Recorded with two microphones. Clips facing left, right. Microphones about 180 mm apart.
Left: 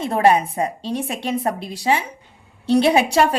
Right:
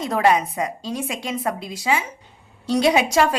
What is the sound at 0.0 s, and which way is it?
Speech, 30° left (ahead or behind).